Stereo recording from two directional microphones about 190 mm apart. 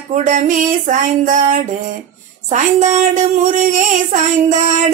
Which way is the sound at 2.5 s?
40° right (ahead or behind).